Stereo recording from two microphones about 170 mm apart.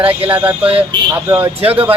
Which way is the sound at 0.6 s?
35° right (ahead or behind).